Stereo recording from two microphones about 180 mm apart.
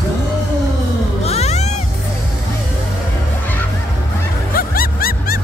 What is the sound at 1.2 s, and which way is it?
Music, 35° left (ahead or behind).